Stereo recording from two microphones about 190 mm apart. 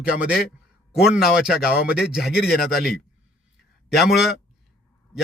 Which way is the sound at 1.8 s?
55° left (ahead or behind).